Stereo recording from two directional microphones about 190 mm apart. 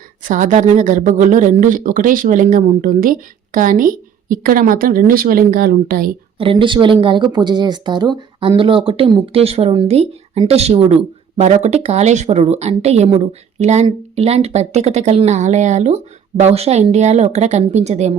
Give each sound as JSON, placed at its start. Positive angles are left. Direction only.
{"t": 0.2, "sound": "speech", "side_deg": -45}
{"t": 6.4, "sound": "speech", "side_deg": -25}